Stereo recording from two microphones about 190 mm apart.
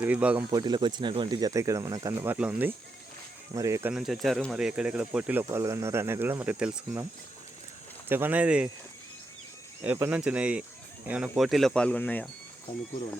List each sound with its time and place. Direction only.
0.0 s speech: 5° right (ahead or behind)
0.5 s speech: 20° right (ahead or behind)
3.9 s speech: centre (ahead or behind)
8.0 s speech: 10° right (ahead or behind)
9.8 s speech: 10° right (ahead or behind); by 12.3 s 10° left (ahead or behind)